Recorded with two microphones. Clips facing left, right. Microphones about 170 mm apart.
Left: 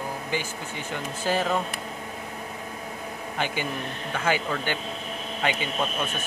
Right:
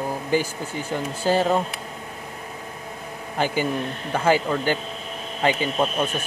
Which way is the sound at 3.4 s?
35° right (ahead or behind).